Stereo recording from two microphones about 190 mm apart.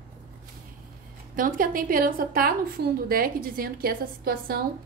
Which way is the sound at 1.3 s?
45° right (ahead or behind).